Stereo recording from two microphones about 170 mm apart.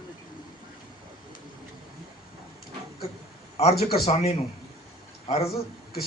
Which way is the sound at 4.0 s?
40° left (ahead or behind).